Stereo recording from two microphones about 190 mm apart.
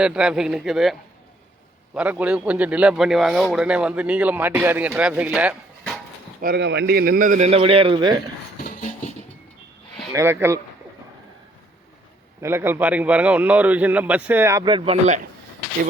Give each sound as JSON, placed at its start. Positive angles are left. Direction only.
{"t": 0.0, "sound": "a man's voice", "side_deg": -5}
{"t": 6.4, "sound": "a man's voice", "side_deg": -60}
{"t": 10.1, "sound": "a man's voice", "side_deg": -15}
{"t": 12.4, "sound": "a man's voice", "side_deg": -10}